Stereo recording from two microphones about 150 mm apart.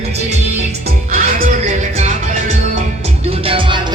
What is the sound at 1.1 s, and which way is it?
Music, 65° right (ahead or behind).